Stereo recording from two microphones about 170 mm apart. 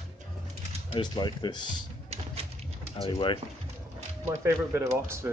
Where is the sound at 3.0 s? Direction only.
30° left (ahead or behind).